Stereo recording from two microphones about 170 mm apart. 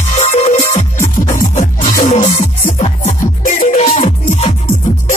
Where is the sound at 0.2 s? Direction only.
40° left (ahead or behind).